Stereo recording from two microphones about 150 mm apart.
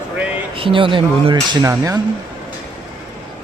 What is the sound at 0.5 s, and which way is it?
Speech, 35° right (ahead or behind).